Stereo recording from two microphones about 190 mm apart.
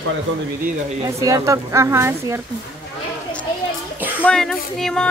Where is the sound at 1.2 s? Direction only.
15° right (ahead or behind).